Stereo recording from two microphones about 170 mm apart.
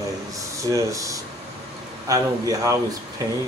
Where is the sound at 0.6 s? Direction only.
20° right (ahead or behind).